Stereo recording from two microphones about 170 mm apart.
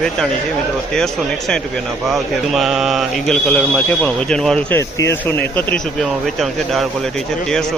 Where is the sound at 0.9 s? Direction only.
5° left (ahead or behind).